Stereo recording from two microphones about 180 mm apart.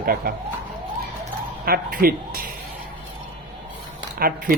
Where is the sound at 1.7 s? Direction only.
55° right (ahead or behind).